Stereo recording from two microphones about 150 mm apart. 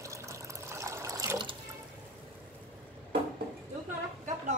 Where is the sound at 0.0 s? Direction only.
20° right (ahead or behind).